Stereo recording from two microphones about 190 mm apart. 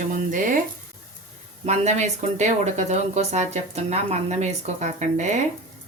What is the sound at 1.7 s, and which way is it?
Speech, 35° right (ahead or behind).